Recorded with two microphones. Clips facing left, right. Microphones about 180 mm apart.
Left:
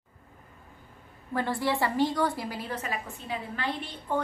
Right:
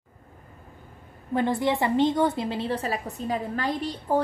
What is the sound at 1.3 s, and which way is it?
A woman's voice, 20° right (ahead or behind).